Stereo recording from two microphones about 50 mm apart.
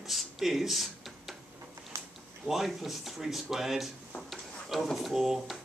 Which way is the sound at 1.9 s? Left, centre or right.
Right.